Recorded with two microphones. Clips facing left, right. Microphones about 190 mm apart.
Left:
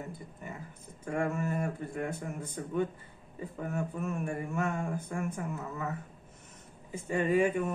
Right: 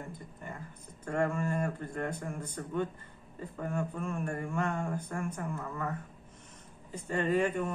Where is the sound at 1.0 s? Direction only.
5° left (ahead or behind).